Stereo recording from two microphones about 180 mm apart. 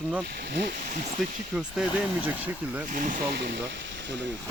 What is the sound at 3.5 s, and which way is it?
Speech, 80° right.